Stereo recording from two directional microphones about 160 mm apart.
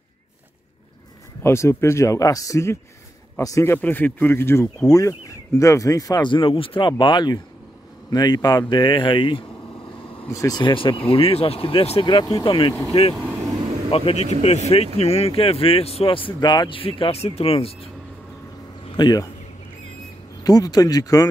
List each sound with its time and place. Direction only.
1.4 s speech: 15° left (ahead or behind); by 9.4 s 30° left (ahead or behind)
10.2 s speech: 20° left (ahead or behind)
13.1 s speech: 5° right (ahead or behind)
13.8 s speech: 35° left (ahead or behind)
18.9 s speech: 25° left (ahead or behind)
20.4 s speech: 25° left (ahead or behind)